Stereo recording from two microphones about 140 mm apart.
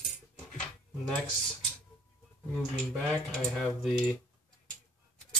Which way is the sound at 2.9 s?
10° left (ahead or behind).